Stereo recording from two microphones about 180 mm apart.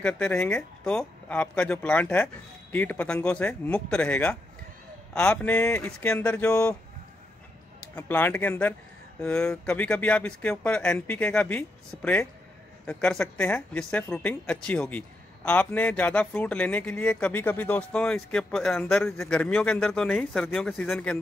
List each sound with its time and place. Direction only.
0.0 s speech: 5° left (ahead or behind)
7.9 s speech: 10° left (ahead or behind)